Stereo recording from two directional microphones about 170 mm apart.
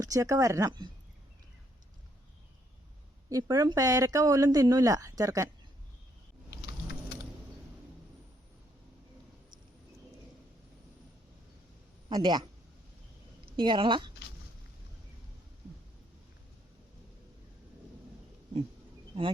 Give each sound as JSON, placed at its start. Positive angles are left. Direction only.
{"t": 0.0, "sound": "speech", "side_deg": -20}
{"t": 3.2, "sound": "speech", "side_deg": -20}
{"t": 6.5, "sound": "vehicle", "side_deg": 80}
{"t": 12.0, "sound": "a man's voice", "side_deg": -25}
{"t": 13.6, "sound": "speech", "side_deg": -25}